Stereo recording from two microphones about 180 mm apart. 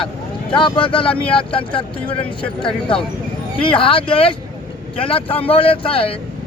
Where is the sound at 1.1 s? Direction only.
5° left (ahead or behind).